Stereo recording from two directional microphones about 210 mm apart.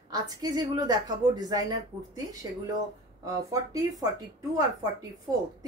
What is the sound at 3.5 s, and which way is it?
Speech, 15° right (ahead or behind).